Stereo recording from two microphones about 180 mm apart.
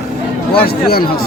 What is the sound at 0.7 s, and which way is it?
Speech, 60° left (ahead or behind).